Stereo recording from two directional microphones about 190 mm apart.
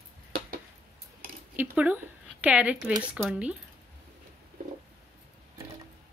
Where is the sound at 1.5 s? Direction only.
10° right (ahead or behind).